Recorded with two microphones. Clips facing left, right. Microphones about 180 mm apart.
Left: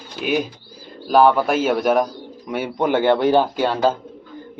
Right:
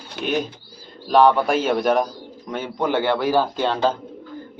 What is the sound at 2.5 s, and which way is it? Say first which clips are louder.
Speech: left 3 dB; 15° left (ahead or behind).